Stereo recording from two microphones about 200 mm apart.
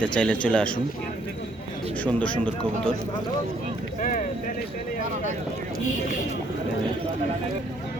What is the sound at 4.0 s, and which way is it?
Speech, 40° left (ahead or behind).